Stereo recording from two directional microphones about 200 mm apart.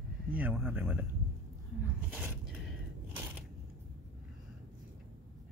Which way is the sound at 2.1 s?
10° right (ahead or behind).